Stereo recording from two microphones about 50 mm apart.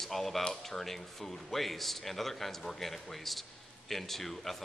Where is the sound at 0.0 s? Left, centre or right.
Centre.